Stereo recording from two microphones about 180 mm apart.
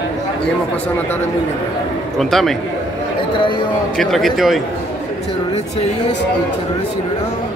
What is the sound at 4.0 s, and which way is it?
Speech, centre (ahead or behind).